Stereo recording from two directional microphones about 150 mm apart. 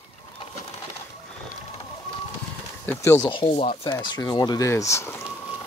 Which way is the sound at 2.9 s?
20° left (ahead or behind).